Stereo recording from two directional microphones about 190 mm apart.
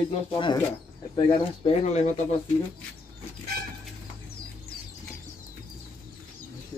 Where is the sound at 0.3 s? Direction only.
25° left (ahead or behind).